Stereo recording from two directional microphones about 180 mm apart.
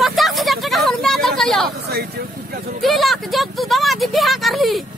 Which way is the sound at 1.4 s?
Centre (ahead or behind).